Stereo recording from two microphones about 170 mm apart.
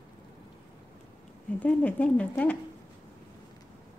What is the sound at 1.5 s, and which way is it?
Speech, 10° left (ahead or behind).